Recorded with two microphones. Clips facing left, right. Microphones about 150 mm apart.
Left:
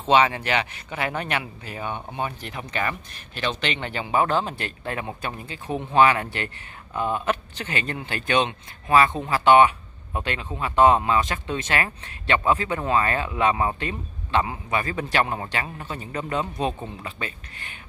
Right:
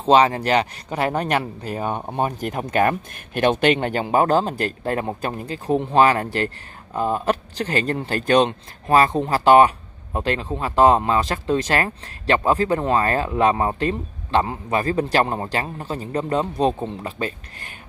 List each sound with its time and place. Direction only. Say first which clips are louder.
0.0 s speech: right 4 dB; 35° right (ahead or behind)